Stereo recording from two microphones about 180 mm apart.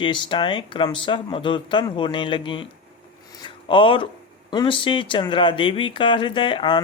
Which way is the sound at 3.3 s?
25° left (ahead or behind).